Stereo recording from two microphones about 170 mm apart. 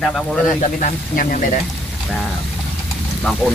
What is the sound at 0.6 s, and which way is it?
Speech, 50° left (ahead or behind).